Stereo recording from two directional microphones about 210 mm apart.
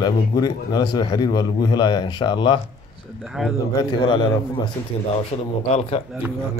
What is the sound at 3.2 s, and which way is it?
Speech, centre (ahead or behind).